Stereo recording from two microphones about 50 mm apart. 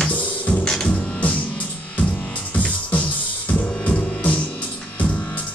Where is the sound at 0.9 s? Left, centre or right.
Left.